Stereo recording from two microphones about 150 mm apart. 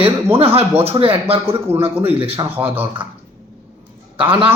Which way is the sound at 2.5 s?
10° right (ahead or behind).